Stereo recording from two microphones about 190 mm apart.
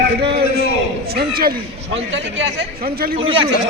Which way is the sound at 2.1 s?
70° right (ahead or behind).